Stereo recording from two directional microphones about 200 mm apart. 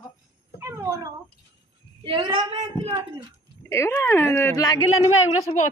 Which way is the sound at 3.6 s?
15° left (ahead or behind).